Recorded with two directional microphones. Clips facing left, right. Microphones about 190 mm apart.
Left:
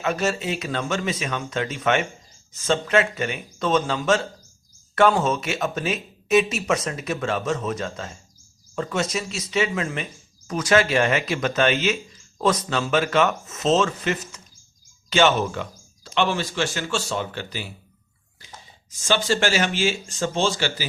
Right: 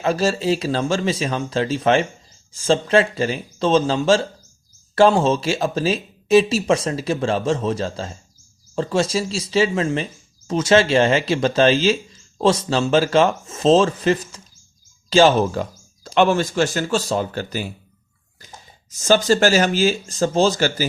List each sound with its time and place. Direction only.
0.0 s speech: 30° right (ahead or behind)
16.0 s speech: 45° right (ahead or behind)